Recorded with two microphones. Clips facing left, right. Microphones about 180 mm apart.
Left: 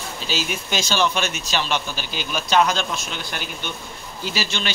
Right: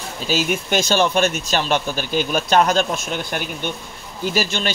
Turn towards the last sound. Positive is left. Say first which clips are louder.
# right 5 dB
turn(degrees=-50)  # may be behind; listen again after turning